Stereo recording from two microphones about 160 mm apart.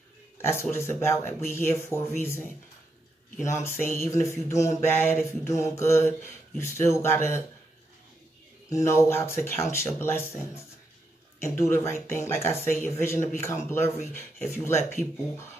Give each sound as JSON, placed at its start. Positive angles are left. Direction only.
{"t": 0.4, "sound": "mantra", "side_deg": 15}
{"t": 3.4, "sound": "mantra", "side_deg": 15}
{"t": 8.6, "sound": "mantra", "side_deg": 20}